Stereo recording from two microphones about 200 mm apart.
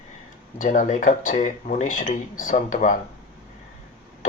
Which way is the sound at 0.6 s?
40° left (ahead or behind).